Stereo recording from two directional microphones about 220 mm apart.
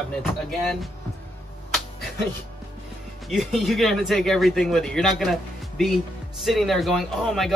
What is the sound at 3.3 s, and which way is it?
Speech, centre (ahead or behind).